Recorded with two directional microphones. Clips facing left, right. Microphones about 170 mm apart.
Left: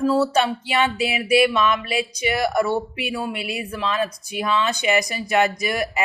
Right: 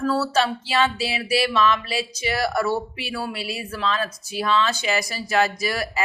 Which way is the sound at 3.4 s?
35° right (ahead or behind).